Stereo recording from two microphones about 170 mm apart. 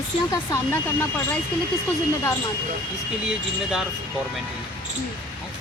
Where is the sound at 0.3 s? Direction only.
15° left (ahead or behind).